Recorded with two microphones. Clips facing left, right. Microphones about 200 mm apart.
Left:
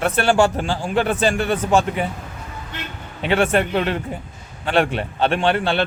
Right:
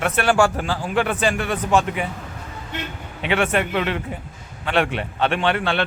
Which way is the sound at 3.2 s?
35° left (ahead or behind).